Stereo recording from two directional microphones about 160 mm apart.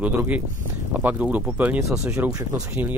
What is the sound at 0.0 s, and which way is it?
Speech, 10° right (ahead or behind).